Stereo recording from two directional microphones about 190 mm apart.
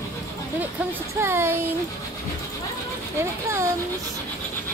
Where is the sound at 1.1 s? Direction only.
15° right (ahead or behind).